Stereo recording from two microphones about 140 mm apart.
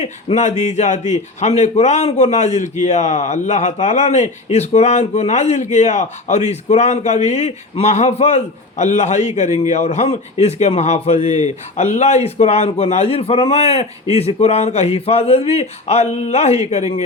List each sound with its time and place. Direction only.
0.0 s a man's voice: 55° left (ahead or behind)